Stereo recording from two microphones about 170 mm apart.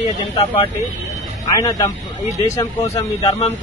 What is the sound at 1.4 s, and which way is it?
Speech, 20° left (ahead or behind).